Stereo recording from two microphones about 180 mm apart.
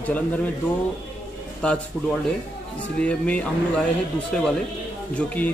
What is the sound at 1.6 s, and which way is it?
Speech, 5° left (ahead or behind).